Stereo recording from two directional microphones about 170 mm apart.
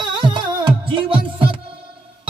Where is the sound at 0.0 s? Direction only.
25° right (ahead or behind).